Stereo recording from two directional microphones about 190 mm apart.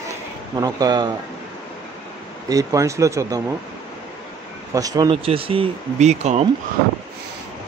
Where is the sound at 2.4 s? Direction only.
20° right (ahead or behind).